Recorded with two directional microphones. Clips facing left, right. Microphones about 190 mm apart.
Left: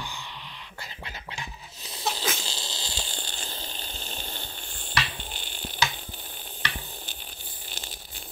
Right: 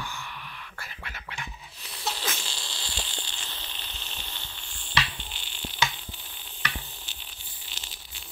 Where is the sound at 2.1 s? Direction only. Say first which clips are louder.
Left 3 dB; 35° left (ahead or behind).